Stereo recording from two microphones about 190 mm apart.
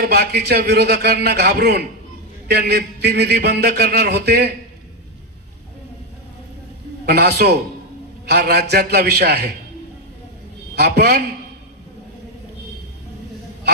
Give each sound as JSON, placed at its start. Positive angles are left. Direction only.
{"t": 0.0, "sound": "a man's voice", "side_deg": -55}
{"t": 7.0, "sound": "a man's voice", "side_deg": -55}
{"t": 10.8, "sound": "a man's voice", "side_deg": -60}